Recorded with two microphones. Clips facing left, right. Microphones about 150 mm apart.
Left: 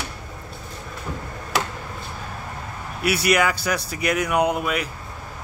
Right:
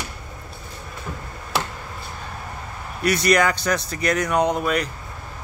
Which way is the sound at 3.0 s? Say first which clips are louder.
Right 2 dB; 10° left (ahead or behind).